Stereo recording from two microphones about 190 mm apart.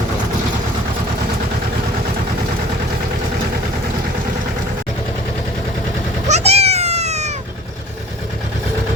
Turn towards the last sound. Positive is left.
turn(degrees=-35)  # may be behind; listen again after turning